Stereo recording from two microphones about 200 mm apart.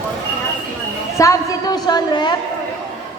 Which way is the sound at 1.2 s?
15° left (ahead or behind).